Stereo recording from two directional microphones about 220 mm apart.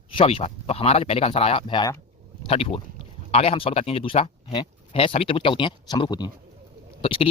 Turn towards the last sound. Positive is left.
turn(degrees=25)  # may be behind; listen again after turning